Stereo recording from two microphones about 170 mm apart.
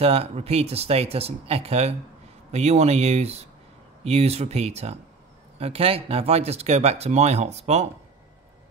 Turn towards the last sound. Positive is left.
turn(degrees=-40)  # may be behind; listen again after turning